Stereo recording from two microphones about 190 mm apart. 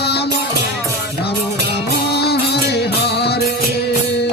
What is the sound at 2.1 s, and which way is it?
Music, 60° left (ahead or behind).